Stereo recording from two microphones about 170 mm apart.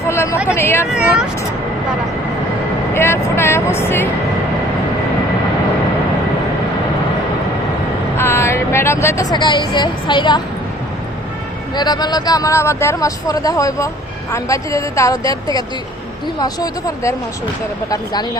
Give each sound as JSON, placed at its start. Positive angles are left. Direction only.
{"t": 0.1, "sound": "a sound", "side_deg": 15}
{"t": 0.4, "sound": "speech", "side_deg": 15}
{"t": 0.9, "sound": "speech", "side_deg": -5}
{"t": 2.9, "sound": "speech", "side_deg": 15}
{"t": 8.2, "sound": "speech", "side_deg": 15}
{"t": 11.7, "sound": "speech", "side_deg": 25}